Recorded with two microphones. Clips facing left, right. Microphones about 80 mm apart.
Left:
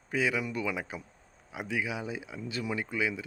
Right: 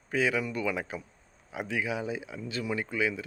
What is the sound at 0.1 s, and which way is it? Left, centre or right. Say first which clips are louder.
Speech: right 2 dB; centre.